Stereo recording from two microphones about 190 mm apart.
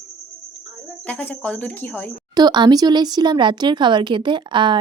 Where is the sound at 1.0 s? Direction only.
10° left (ahead or behind).